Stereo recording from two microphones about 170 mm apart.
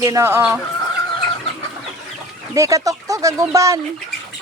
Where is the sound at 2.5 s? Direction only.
20° right (ahead or behind).